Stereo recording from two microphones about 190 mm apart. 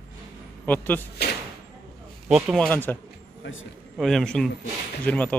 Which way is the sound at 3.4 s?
90° left.